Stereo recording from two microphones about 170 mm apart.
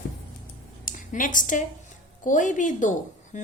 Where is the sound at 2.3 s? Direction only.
50° left (ahead or behind).